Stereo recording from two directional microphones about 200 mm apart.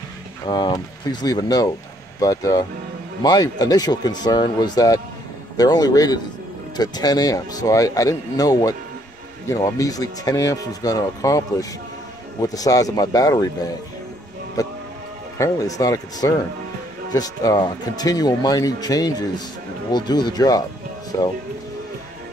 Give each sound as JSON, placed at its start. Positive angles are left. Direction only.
{"t": 0.5, "sound": "speech", "side_deg": 20}
{"t": 14.6, "sound": "speech", "side_deg": 15}